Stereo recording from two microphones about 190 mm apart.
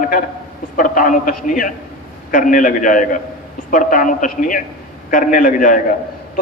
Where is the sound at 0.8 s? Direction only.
45° left (ahead or behind).